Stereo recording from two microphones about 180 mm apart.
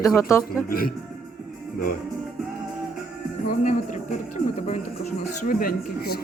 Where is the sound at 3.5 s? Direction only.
45° left (ahead or behind).